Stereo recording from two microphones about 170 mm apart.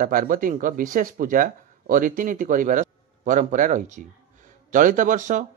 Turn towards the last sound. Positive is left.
turn(degrees=-50)  # may be behind; listen again after turning